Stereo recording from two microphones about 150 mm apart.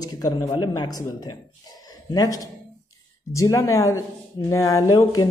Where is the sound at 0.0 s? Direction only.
25° left (ahead or behind).